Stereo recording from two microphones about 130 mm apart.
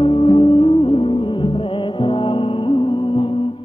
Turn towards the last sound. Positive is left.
turn(degrees=45)  # may be behind; listen again after turning